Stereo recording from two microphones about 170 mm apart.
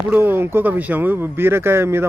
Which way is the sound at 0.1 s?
10° right (ahead or behind).